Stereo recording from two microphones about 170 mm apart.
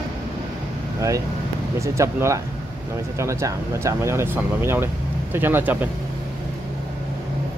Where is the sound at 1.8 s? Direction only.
15° right (ahead or behind).